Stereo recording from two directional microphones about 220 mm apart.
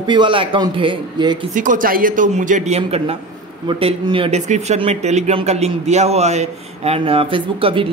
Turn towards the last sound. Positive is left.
turn(degrees=-25)  # may be behind; listen again after turning